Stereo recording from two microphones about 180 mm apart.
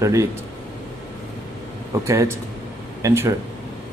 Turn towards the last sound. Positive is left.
turn(degrees=-15)  # may be behind; listen again after turning